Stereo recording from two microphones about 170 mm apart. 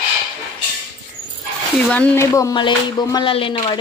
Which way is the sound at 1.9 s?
10° left (ahead or behind).